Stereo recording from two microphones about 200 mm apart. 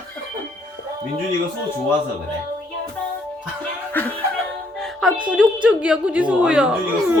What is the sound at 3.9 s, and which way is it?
Music, 10° left (ahead or behind).